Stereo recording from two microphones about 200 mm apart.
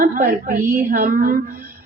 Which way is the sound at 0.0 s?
45° right (ahead or behind).